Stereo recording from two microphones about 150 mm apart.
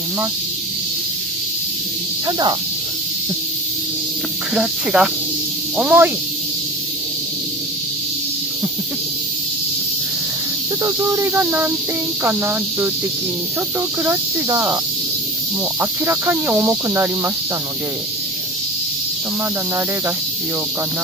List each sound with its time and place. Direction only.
2.2 s speech: 25° right (ahead or behind)
4.6 s speech: 5° right (ahead or behind)
10.8 s speech: 25° right (ahead or behind)
15.8 s speech: 15° right (ahead or behind)